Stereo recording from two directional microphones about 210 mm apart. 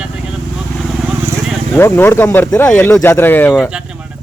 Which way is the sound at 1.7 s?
10° left (ahead or behind).